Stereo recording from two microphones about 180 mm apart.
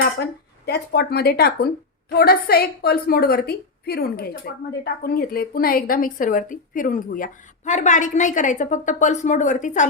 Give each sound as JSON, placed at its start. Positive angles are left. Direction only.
{"t": 0.6, "sound": "a woman's voice", "side_deg": 60}